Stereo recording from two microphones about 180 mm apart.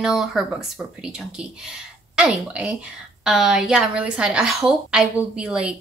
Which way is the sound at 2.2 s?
5° right (ahead or behind).